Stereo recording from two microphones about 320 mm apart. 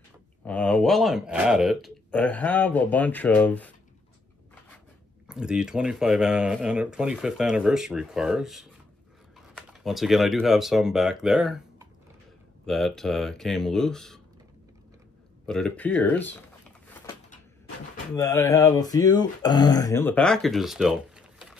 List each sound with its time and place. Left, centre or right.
0.5 s speech: centre
5.3 s speech: centre
15.4 s speech: centre
18.1 s speech: centre